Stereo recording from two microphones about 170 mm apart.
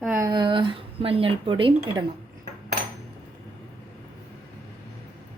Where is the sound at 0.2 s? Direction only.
25° right (ahead or behind).